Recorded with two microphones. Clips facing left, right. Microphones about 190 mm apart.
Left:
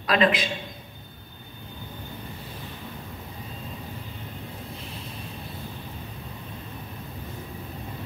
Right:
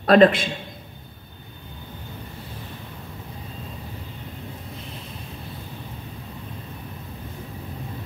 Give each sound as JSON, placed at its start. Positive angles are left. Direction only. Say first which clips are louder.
{"t": 0.0, "sound": "a man's voice", "louder": "right 8 dB", "side_deg": -50}